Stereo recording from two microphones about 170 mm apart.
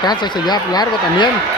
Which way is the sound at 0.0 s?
25° left (ahead or behind).